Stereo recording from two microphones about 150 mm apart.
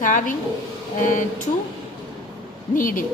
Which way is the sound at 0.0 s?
60° left (ahead or behind).